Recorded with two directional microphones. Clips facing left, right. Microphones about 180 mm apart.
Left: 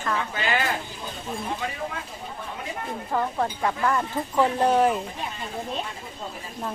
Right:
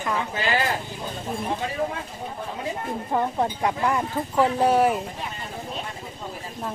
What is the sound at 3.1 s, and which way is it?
Speech, 20° right (ahead or behind).